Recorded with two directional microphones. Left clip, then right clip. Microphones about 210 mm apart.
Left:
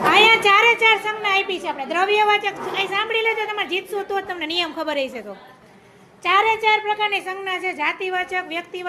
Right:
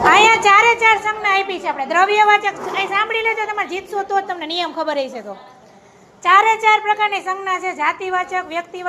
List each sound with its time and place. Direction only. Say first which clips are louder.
0.0 s a woman's voice: right 3 dB; 5° right (ahead or behind)
6.2 s a woman's voice: right 5 dB; centre (ahead or behind)